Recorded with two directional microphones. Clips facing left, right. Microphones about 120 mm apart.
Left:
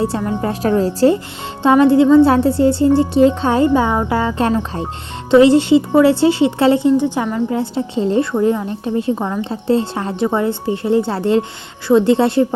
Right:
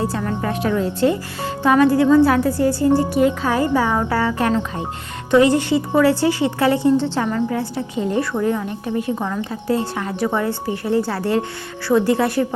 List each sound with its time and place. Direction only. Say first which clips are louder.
0.4 s a woman's voice: left 5 dB; 35° left (ahead or behind)
1.6 s a woman's voice: left 4 dB; 25° left (ahead or behind)